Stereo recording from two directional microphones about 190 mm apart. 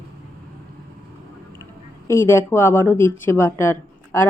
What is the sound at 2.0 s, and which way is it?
Speech, 15° left (ahead or behind).